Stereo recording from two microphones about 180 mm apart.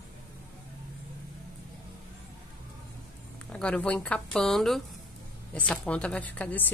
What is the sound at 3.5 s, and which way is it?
A woman's voice, 5° left (ahead or behind).